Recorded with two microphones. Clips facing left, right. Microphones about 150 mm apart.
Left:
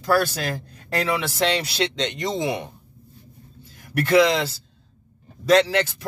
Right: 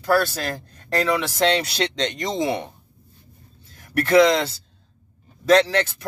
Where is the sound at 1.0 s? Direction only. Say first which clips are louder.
Right 2 dB; 5° left (ahead or behind).